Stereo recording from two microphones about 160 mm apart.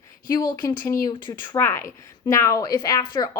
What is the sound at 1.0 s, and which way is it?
Speech, 25° left (ahead or behind).